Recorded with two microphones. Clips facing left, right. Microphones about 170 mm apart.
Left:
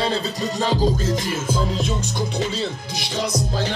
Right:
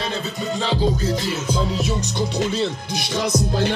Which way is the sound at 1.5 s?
5° right (ahead or behind).